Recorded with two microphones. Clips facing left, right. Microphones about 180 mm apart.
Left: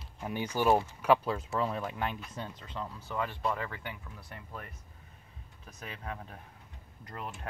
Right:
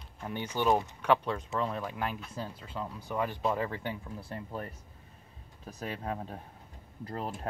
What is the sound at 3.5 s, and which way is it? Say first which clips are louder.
Speech: right 4 dB; 30° right (ahead or behind).